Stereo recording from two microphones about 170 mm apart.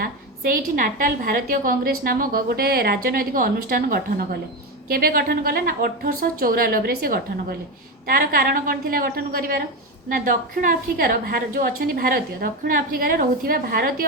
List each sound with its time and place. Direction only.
0.0 s a woman's voice: 55° right (ahead or behind)